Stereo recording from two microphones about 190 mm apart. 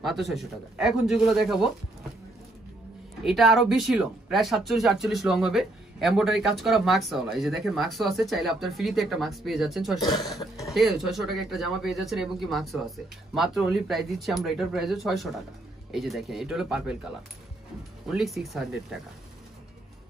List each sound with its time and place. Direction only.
0.0 s speech: centre (ahead or behind)
3.3 s speech: centre (ahead or behind)
10.4 s speech: 15° left (ahead or behind)
10.7 s speech: centre (ahead or behind)
18.0 s speech: centre (ahead or behind)